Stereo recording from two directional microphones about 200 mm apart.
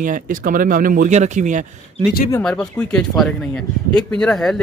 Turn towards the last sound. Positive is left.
turn(degrees=0)  # may be behind; listen again after turning